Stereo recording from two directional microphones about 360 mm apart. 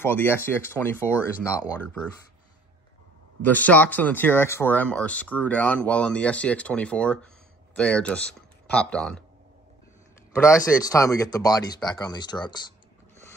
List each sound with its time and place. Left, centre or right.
0.0 s speech: centre
3.4 s speech: centre
10.4 s speech: centre